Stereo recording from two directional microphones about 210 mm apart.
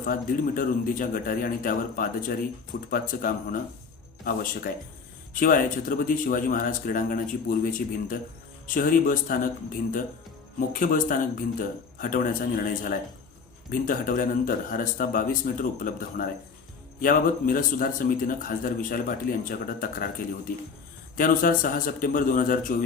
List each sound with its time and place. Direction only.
0.0 s speech: 40° left (ahead or behind)
10.7 s speech: 40° left (ahead or behind)